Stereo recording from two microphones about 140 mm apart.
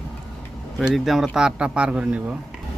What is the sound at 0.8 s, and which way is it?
Speech, 5° right (ahead or behind).